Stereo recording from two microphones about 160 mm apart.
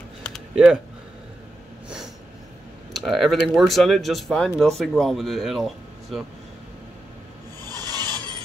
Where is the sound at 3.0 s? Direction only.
Centre (ahead or behind).